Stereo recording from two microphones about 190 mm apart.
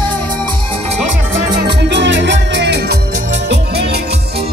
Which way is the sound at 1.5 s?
65° right (ahead or behind).